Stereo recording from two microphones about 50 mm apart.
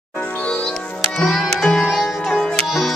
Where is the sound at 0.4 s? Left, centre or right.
Centre.